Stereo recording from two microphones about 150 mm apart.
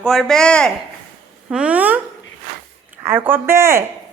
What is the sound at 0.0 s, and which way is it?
Speech, 5° left (ahead or behind).